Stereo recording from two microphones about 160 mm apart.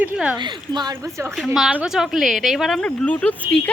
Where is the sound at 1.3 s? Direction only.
Centre (ahead or behind).